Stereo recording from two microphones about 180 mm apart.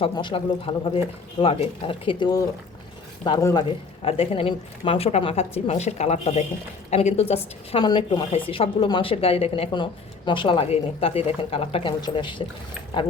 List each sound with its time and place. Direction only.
0.0 s a woman's voice: 30° left (ahead or behind)